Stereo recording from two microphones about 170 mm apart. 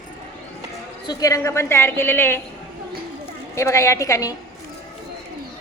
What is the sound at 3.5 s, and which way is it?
Speech, 15° left (ahead or behind).